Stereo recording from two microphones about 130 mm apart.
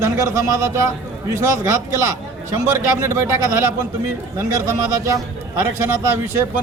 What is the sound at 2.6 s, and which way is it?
Speech, 20° right (ahead or behind).